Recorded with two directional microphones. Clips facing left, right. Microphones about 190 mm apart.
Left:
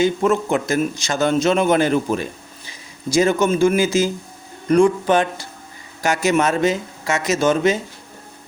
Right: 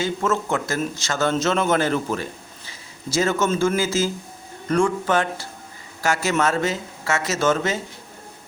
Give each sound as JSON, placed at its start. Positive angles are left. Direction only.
{"t": 0.0, "sound": "a man's voice", "side_deg": 15}